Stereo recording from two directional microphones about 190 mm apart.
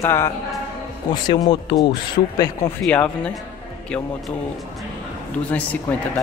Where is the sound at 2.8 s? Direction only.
5° left (ahead or behind).